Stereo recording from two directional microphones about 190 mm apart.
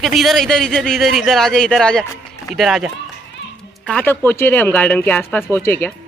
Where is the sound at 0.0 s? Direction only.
Centre (ahead or behind).